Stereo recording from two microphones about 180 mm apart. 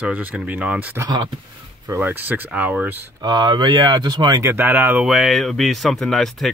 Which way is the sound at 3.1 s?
25° right (ahead or behind).